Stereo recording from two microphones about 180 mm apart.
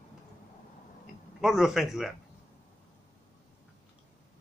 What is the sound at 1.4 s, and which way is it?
Speech, centre (ahead or behind).